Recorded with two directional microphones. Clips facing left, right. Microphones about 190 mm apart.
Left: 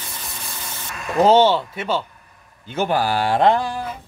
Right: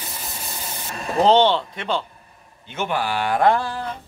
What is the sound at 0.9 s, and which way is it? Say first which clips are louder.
Speech: right 1 dB; 30° right (ahead or behind).